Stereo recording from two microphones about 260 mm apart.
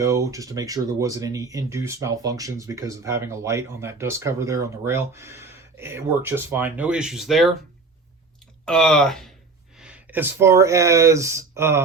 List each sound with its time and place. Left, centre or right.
0.0 s speech: centre
8.6 s speech: centre